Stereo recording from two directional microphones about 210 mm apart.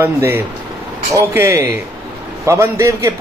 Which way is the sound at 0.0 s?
10° right (ahead or behind).